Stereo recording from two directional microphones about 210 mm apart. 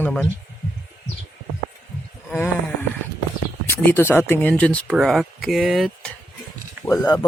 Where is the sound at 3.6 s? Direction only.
10° left (ahead or behind).